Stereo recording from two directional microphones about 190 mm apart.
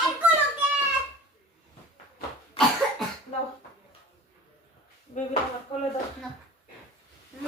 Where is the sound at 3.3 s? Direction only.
35° left (ahead or behind).